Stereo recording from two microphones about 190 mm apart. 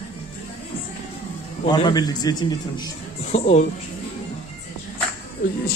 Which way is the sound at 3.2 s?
35° left (ahead or behind).